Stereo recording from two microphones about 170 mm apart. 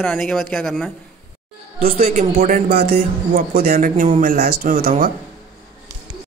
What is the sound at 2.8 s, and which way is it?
Speech, 40° right (ahead or behind).